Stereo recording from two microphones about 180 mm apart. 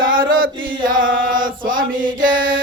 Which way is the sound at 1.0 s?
90° right.